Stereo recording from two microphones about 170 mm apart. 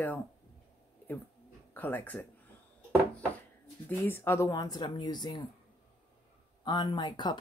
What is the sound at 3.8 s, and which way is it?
Speech, 10° left (ahead or behind).